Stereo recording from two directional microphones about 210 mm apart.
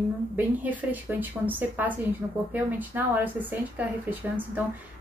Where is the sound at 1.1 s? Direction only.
5° right (ahead or behind).